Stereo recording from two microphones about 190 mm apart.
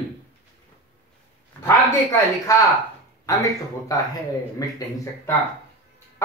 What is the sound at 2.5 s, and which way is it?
Speech, 15° left (ahead or behind).